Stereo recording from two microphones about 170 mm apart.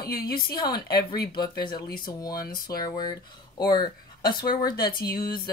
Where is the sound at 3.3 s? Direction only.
25° left (ahead or behind).